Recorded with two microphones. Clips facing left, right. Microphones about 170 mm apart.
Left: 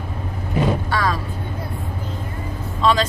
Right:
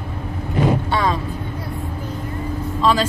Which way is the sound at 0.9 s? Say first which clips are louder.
Right 2 dB; 25° right (ahead or behind).